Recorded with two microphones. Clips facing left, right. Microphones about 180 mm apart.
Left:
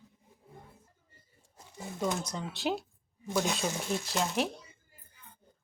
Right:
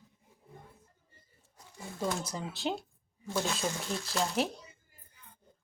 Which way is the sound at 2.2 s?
Centre (ahead or behind).